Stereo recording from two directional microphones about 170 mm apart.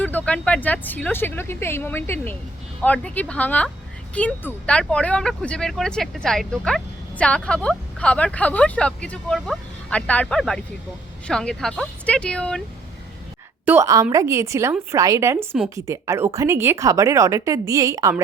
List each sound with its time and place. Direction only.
0.0 s speech: 10° left (ahead or behind)
13.7 s a woman's voice: 15° right (ahead or behind)